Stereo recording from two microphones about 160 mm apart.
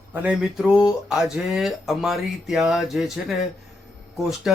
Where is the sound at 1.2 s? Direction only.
Centre (ahead or behind).